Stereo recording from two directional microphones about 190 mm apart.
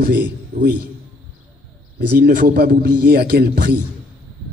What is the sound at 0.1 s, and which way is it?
Speech, 45° right (ahead or behind).